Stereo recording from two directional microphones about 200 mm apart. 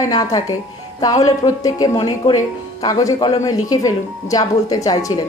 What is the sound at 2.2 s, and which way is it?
Speech, 35° left (ahead or behind).